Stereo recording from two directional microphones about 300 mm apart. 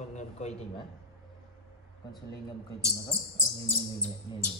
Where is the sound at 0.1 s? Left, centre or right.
Left.